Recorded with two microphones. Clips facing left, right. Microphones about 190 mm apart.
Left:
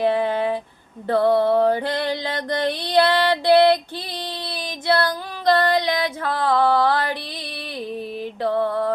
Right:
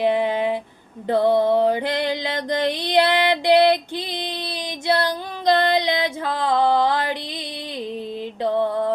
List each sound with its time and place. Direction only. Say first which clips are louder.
0.0 s a sound: even; 15° right (ahead or behind)
1.0 s mantra: even; 15° right (ahead or behind)
7.8 s music: even; 20° right (ahead or behind)